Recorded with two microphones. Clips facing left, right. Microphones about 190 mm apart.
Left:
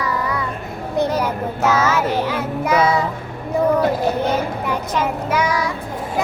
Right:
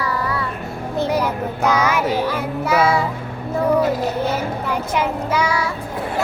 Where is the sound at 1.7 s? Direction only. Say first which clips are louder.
Even; 15° right (ahead or behind).